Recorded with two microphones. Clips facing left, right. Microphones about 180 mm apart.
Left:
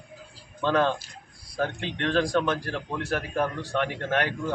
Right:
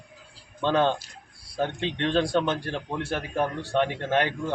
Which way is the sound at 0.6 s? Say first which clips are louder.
Right 1 dB; 25° right (ahead or behind).